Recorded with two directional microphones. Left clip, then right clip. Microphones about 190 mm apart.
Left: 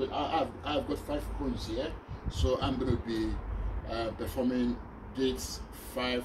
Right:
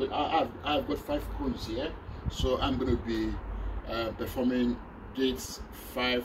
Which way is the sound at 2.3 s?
10° right (ahead or behind).